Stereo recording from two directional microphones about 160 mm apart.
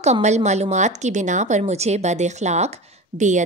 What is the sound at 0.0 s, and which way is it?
A woman's voice, 45° right (ahead or behind).